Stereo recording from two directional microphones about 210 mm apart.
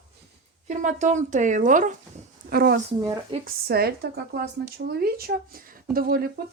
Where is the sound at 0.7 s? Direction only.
35° right (ahead or behind).